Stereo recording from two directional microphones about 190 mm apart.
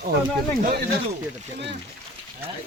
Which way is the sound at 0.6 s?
50° right (ahead or behind).